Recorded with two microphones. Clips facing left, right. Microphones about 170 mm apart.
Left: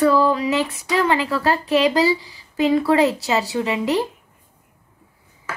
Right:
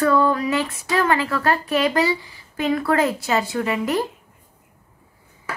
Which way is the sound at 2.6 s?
20° left (ahead or behind).